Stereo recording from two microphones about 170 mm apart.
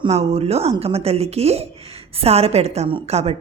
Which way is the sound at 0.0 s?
40° right (ahead or behind).